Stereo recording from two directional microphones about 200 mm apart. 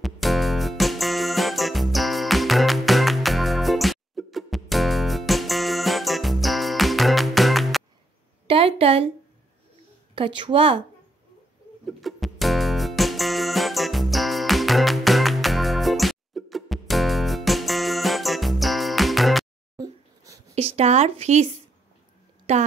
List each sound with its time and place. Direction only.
0.0 s music: centre (ahead or behind)
8.5 s a sound: 30° right (ahead or behind)
10.1 s a woman's voice: 25° right (ahead or behind)
11.8 s music: centre (ahead or behind)
19.8 s a sound: 15° right (ahead or behind)
20.5 s speech: 30° right (ahead or behind)